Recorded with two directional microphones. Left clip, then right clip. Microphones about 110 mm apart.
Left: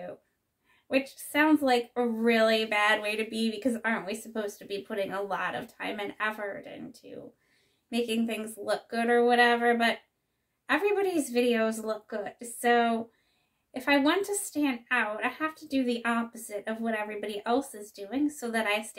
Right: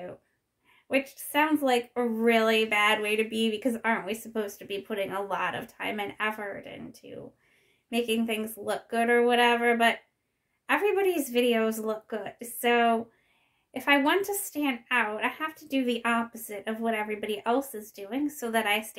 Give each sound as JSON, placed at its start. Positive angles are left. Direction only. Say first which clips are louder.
{"t": 0.8, "sound": "speech", "louder": "right 1 dB", "side_deg": -25}